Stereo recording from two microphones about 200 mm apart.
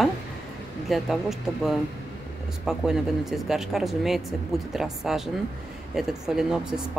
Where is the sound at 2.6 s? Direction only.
5° right (ahead or behind).